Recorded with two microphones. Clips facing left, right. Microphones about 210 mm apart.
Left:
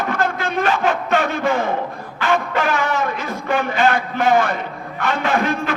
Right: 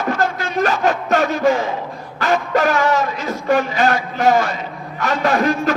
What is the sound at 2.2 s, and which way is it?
Music, 40° right (ahead or behind).